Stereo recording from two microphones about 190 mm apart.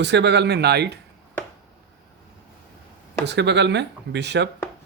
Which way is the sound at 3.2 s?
65° right (ahead or behind).